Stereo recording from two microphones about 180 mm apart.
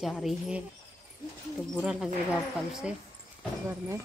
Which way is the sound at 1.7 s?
Centre (ahead or behind).